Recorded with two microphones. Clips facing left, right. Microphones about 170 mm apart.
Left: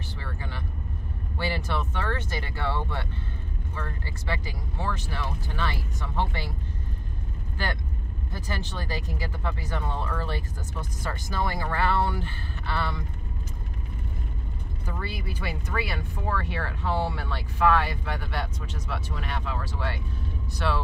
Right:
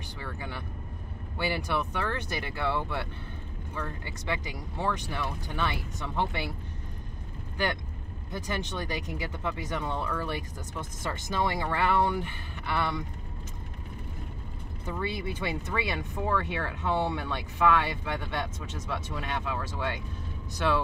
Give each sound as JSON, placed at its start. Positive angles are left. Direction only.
{"t": 0.2, "sound": "vehicle", "side_deg": -15}
{"t": 1.4, "sound": "speech", "side_deg": -15}
{"t": 8.3, "sound": "speech", "side_deg": -20}
{"t": 14.9, "sound": "speech", "side_deg": -25}